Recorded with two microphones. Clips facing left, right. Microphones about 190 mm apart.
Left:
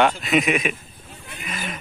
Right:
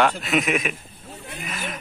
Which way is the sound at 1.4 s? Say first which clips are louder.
Left 1 dB; centre (ahead or behind).